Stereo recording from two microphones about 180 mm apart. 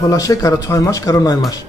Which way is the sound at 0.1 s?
20° left (ahead or behind).